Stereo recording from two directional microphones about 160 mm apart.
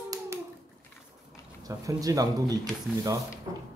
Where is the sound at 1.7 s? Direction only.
20° right (ahead or behind).